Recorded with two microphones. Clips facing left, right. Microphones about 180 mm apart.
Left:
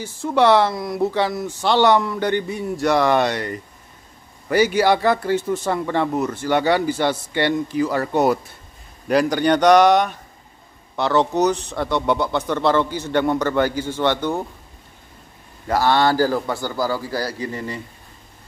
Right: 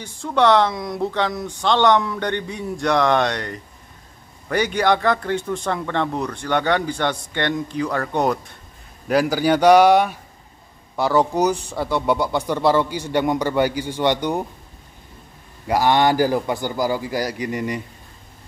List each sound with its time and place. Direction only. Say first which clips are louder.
0.0 s a man's voice: left 1 dB; 5° left (ahead or behind); by 14.4 s 15° right (ahead or behind)
15.6 s speech: right 1 dB; 15° right (ahead or behind)